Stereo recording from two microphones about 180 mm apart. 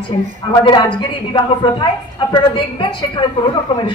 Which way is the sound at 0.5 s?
25° left (ahead or behind).